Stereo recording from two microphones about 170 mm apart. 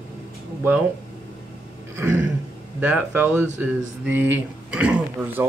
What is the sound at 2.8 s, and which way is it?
Speech, 10° right (ahead or behind).